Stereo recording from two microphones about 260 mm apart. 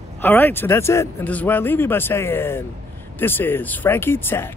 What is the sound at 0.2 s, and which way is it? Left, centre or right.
Speech, centre.